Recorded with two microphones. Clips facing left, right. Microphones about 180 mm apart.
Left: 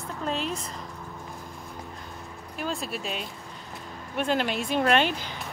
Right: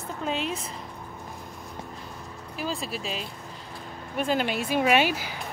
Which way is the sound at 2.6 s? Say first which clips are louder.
Even; centre (ahead or behind).